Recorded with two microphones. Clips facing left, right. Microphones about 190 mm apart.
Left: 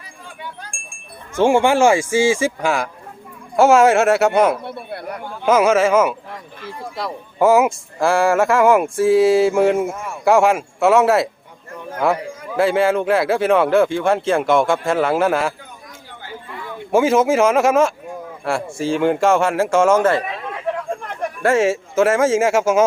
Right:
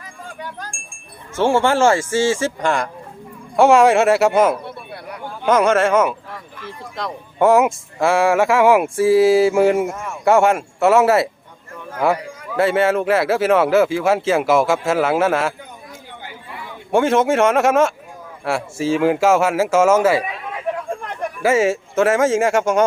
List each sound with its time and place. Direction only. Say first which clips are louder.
1.4 s speech: left 2 dB; 15° left (ahead or behind); by 15.5 s centre (ahead or behind)
16.9 s speech: left 1 dB; centre (ahead or behind)